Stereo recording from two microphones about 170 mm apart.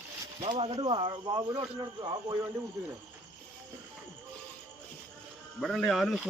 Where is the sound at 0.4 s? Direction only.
35° right (ahead or behind).